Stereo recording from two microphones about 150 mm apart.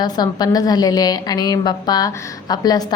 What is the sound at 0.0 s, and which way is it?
A woman's voice, 25° left (ahead or behind).